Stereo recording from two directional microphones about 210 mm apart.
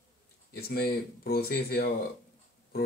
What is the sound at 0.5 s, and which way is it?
Speech, 50° left (ahead or behind).